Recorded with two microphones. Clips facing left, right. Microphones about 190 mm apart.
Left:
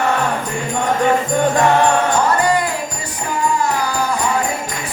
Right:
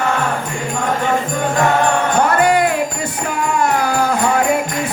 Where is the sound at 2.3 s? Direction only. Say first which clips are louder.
Right 3 dB; 60° right (ahead or behind).